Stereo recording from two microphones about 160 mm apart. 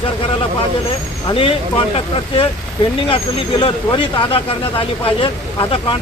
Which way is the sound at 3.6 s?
35° left (ahead or behind).